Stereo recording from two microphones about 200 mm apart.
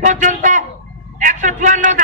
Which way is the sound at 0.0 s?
40° right (ahead or behind).